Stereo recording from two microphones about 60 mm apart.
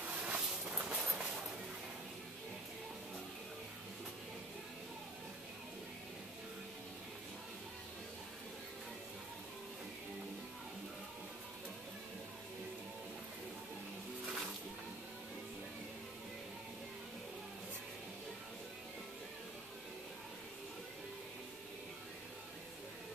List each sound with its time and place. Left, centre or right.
0.0 s vehicle: right
0.8 s train: centre